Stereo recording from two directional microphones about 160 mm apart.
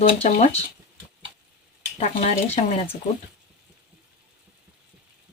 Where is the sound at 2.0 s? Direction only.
40° left (ahead or behind).